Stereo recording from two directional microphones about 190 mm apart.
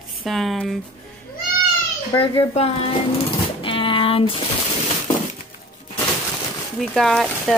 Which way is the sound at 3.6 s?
30° left (ahead or behind).